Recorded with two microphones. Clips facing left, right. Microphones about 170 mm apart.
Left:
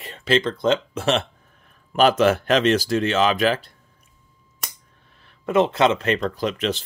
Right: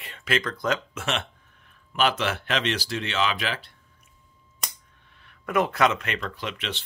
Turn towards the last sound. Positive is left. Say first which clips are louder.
# left 10 dB
turn(degrees=40)  # may be behind; listen again after turning